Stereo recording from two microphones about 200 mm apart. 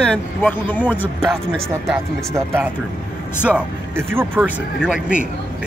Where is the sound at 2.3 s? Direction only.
10° right (ahead or behind).